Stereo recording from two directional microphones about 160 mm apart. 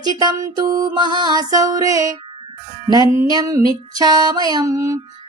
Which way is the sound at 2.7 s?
30° right (ahead or behind).